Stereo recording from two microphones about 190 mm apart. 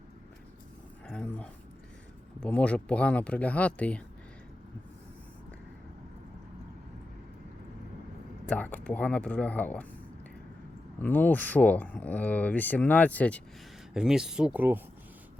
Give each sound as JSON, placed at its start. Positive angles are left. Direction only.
{"t": 1.0, "sound": "a sound", "side_deg": 5}
{"t": 2.4, "sound": "speech", "side_deg": 5}
{"t": 8.4, "sound": "speech", "side_deg": 10}
{"t": 11.0, "sound": "speech", "side_deg": 10}
{"t": 13.9, "sound": "speech", "side_deg": -5}